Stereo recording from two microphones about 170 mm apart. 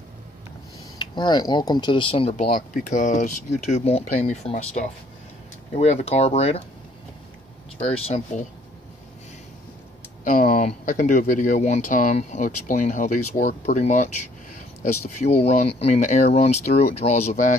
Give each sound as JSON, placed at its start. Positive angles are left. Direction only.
{"t": 0.9, "sound": "speech", "side_deg": 25}
{"t": 2.3, "sound": "speech", "side_deg": 50}
{"t": 7.8, "sound": "speech", "side_deg": 40}
{"t": 10.2, "sound": "speech", "side_deg": 50}